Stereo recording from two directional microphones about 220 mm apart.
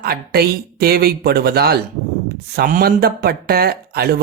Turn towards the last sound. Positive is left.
turn(degrees=-45)  # may be behind; listen again after turning